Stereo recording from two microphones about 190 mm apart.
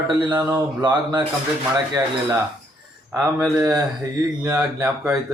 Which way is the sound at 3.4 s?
10° right (ahead or behind).